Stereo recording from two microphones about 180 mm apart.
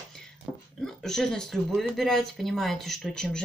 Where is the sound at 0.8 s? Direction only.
Centre (ahead or behind).